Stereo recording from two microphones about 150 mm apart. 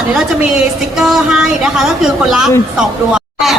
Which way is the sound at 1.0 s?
5° right (ahead or behind).